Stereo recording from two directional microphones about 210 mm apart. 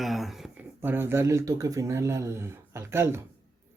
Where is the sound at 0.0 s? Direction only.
Centre (ahead or behind).